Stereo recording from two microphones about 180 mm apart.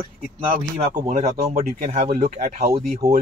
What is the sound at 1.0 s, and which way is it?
Speech, 40° right (ahead or behind).